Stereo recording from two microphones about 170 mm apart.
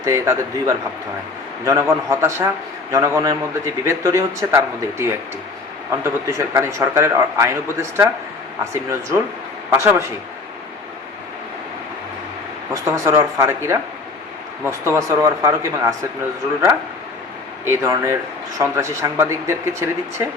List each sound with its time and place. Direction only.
0.0 s a man's voice: 15° right (ahead or behind)
12.7 s a man's voice: 15° right (ahead or behind)
17.7 s a man's voice: 15° right (ahead or behind)